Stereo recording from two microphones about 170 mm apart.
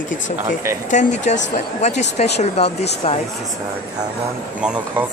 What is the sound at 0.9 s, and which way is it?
Speech, 45° left (ahead or behind).